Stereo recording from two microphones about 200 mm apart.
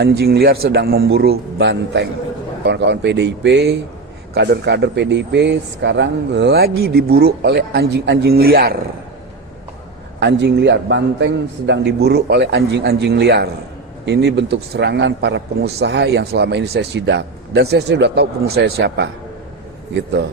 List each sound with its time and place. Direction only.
0.0 s a man's voice: 50° right (ahead or behind)
10.2 s speech: 60° right (ahead or behind)